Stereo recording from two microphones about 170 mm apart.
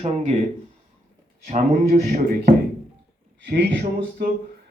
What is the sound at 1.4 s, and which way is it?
Speech, 45° right (ahead or behind).